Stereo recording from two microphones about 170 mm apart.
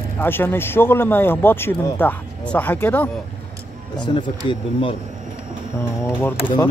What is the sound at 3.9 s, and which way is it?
Speech, 30° left (ahead or behind).